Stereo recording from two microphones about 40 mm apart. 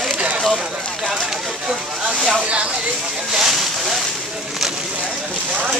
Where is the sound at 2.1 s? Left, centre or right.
Centre.